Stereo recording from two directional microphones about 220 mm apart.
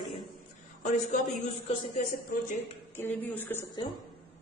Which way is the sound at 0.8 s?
35° left (ahead or behind).